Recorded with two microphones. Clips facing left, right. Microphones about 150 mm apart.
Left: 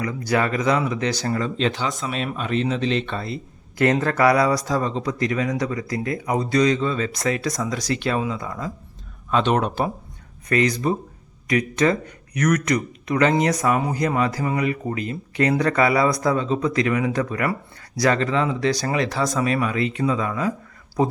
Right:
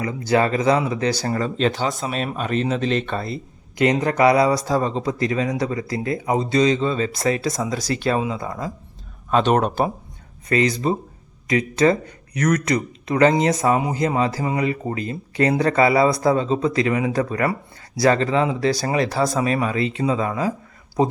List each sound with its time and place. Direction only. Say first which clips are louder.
0.0 s speech: right 3 dB; 25° right (ahead or behind)
3.8 s speech: right 1 dB; 15° right (ahead or behind)
9.3 s speech: right 2 dB; 45° right (ahead or behind)
10.5 s speech: right 1 dB; 30° right (ahead or behind)